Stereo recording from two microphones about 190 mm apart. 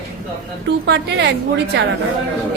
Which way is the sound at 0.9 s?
65° right (ahead or behind).